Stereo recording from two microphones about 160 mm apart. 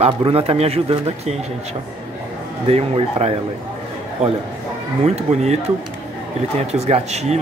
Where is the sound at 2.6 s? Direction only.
40° right (ahead or behind).